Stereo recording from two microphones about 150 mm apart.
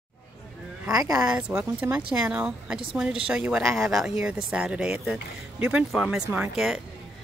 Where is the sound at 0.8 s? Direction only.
20° right (ahead or behind); by 6.2 s 5° right (ahead or behind).